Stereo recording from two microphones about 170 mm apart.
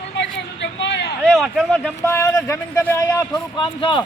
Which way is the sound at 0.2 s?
90° left.